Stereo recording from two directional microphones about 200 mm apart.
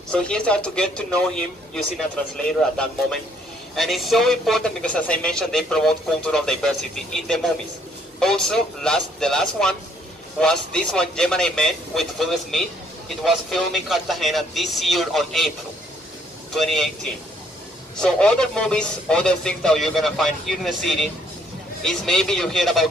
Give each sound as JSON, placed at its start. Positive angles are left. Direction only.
{"t": 0.1, "sound": "speech", "side_deg": 5}
{"t": 16.5, "sound": "speech", "side_deg": 0}